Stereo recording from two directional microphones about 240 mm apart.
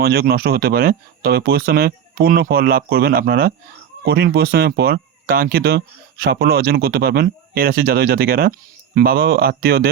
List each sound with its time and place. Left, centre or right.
0.0 s speech: right